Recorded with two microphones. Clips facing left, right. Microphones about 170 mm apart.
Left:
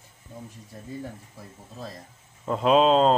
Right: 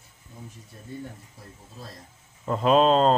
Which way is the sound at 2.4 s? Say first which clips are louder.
Even; centre (ahead or behind).